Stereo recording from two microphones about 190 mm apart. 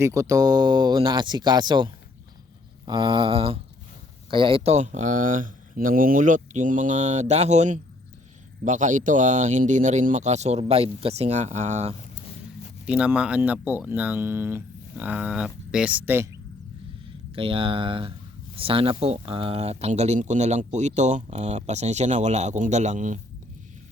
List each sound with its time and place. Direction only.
0.0 s speech: 15° right (ahead or behind); by 11.9 s 35° right (ahead or behind)
12.8 s speech: 5° right (ahead or behind)
17.3 s speech: 30° right (ahead or behind)